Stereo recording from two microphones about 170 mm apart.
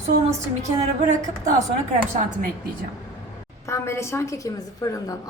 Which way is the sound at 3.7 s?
15° left (ahead or behind).